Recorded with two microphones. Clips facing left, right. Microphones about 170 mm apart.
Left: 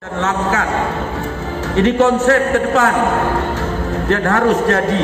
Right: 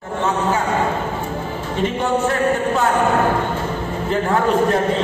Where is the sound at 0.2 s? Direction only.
85° left.